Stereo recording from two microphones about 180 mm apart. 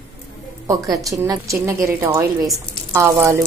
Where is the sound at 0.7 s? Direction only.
20° right (ahead or behind).